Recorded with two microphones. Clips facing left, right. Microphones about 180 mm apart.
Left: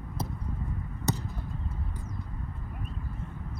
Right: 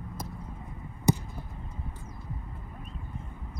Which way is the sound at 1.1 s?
15° right (ahead or behind).